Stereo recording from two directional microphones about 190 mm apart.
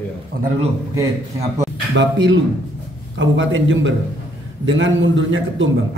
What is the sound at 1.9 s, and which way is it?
A man's voice, 70° right (ahead or behind).